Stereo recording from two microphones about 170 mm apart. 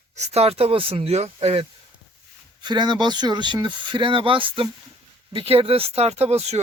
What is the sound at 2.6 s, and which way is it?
Speech, 25° right (ahead or behind).